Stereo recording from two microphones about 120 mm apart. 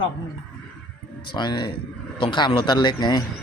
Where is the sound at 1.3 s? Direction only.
40° left (ahead or behind).